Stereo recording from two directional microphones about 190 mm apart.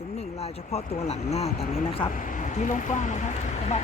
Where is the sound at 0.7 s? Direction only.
35° left (ahead or behind).